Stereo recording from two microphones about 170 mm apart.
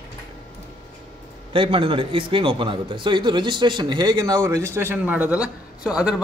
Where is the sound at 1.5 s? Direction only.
30° right (ahead or behind).